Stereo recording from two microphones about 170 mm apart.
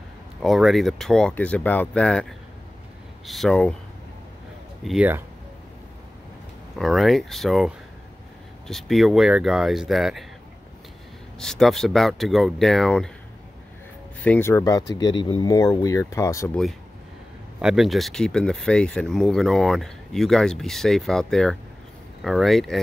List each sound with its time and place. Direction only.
0.4 s speech: centre (ahead or behind)
4.8 s speech: 5° right (ahead or behind)
6.8 s speech: centre (ahead or behind)
11.3 s speech: centre (ahead or behind)
14.2 s speech: 10° left (ahead or behind)
17.6 s speech: 5° right (ahead or behind)